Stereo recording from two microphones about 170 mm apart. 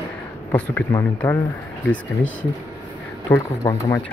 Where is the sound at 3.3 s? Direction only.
20° left (ahead or behind).